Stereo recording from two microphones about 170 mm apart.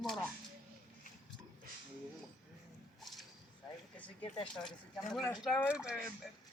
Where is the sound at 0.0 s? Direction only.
5° left (ahead or behind).